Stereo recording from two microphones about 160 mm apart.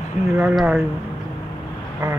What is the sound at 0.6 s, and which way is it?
Speech, centre (ahead or behind).